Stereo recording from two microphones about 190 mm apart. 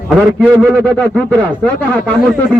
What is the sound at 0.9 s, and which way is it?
Speech, 5° left (ahead or behind).